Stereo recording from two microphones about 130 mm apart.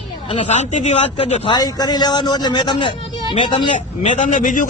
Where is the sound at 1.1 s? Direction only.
45° left (ahead or behind).